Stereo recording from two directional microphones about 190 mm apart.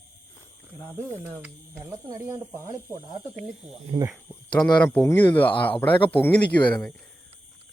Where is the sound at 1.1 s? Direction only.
10° right (ahead or behind).